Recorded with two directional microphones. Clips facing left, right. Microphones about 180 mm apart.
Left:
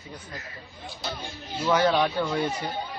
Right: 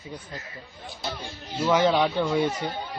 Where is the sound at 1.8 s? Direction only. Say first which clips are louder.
Right 1 dB; 15° right (ahead or behind).